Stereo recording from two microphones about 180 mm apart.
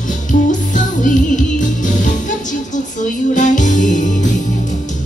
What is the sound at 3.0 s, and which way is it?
Music, 45° left (ahead or behind).